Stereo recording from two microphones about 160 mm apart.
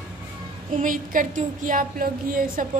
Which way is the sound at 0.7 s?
55° right (ahead or behind).